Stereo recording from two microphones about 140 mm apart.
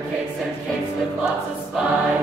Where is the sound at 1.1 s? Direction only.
5° right (ahead or behind).